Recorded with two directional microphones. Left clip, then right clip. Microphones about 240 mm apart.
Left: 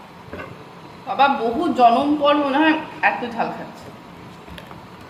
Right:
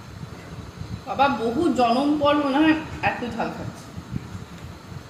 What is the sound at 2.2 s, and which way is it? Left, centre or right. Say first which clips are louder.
A woman's voice: left 3 dB; centre.